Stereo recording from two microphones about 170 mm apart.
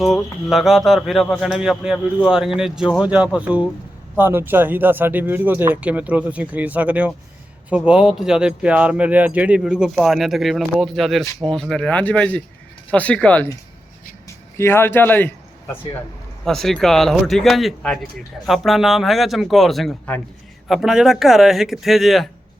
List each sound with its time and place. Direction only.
0.0 s speech: centre (ahead or behind)
14.6 s speech: 15° left (ahead or behind)
16.4 s speech: centre (ahead or behind)